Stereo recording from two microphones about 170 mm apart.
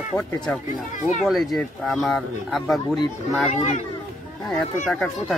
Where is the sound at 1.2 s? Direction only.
Centre (ahead or behind).